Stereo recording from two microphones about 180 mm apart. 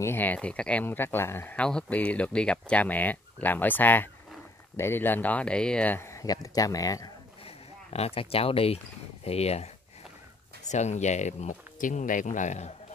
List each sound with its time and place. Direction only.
0.0 s speech: 10° left (ahead or behind)
7.4 s speech: 35° left (ahead or behind)
10.7 s speech: 40° left (ahead or behind)